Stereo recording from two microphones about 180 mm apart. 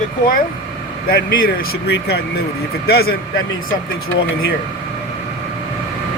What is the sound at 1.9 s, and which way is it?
Speech, 60° left (ahead or behind).